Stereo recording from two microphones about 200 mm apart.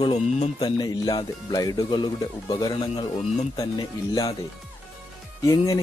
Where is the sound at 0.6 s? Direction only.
20° left (ahead or behind).